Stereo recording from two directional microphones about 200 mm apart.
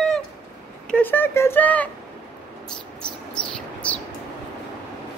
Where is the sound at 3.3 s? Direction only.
5° left (ahead or behind).